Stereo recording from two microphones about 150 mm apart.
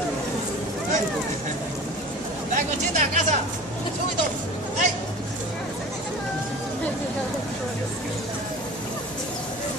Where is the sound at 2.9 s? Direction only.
50° right (ahead or behind).